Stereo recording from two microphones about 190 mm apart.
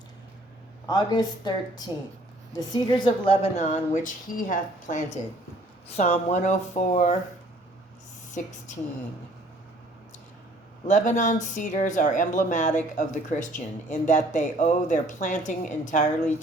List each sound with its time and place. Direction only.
0.9 s speech: 20° left (ahead or behind); by 7.2 s 40° left (ahead or behind)
10.8 s speech: 40° left (ahead or behind)